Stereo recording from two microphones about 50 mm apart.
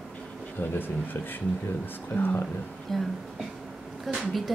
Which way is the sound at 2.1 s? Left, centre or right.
Left.